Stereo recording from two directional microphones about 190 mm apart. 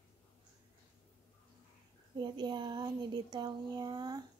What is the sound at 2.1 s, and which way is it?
A woman's voice, 25° right (ahead or behind).